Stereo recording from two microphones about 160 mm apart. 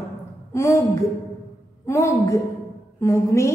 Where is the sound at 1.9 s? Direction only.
20° left (ahead or behind).